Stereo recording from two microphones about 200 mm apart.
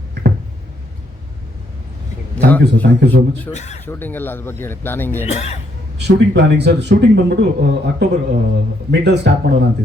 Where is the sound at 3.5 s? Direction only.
35° left (ahead or behind).